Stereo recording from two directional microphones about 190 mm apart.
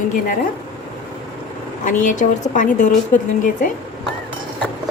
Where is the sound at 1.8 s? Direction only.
40° left (ahead or behind).